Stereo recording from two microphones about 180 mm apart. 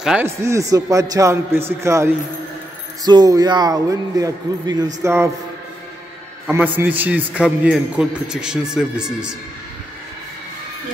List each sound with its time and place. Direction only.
0.0 s speech: 5° right (ahead or behind)
0.4 s a man's voice: 15° right (ahead or behind)
6.5 s a man's voice: 10° right (ahead or behind)